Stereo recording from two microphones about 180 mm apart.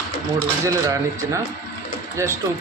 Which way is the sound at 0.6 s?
15° right (ahead or behind).